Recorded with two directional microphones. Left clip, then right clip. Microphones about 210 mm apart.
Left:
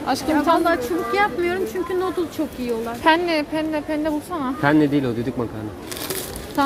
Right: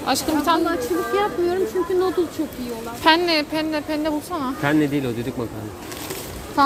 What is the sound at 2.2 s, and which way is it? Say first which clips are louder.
Speech: right 2 dB; 50° left (ahead or behind).